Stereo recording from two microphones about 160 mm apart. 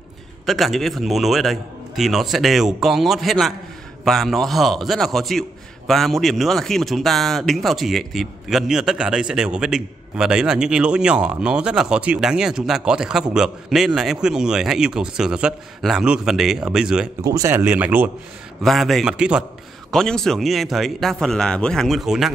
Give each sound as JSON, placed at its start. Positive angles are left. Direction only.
{"t": 0.5, "sound": "a man's voice", "side_deg": 0}
{"t": 17.2, "sound": "a man's voice", "side_deg": -25}